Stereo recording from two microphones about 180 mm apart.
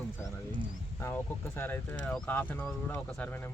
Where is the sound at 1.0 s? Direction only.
10° left (ahead or behind).